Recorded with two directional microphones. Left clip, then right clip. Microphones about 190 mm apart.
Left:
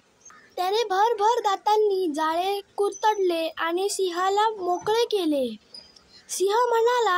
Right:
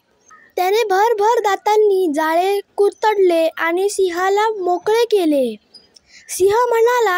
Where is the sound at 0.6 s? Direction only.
40° right (ahead or behind).